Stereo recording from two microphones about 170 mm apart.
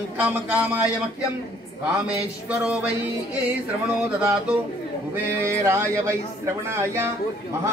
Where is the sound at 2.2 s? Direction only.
10° right (ahead or behind).